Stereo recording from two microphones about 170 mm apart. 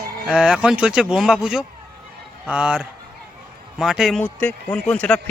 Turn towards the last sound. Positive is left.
turn(degrees=5)  # may be behind; listen again after turning